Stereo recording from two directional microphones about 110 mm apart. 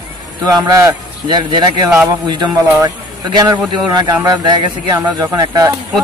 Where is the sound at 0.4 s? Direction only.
35° right (ahead or behind).